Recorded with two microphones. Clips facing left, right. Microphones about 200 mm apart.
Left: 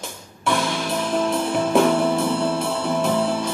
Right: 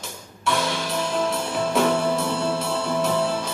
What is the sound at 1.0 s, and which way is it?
Music, 55° left (ahead or behind).